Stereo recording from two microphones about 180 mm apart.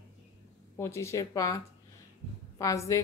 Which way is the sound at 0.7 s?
15° left (ahead or behind).